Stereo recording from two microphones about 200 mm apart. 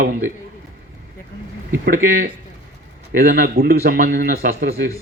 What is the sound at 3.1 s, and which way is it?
A man's voice, 45° right (ahead or behind).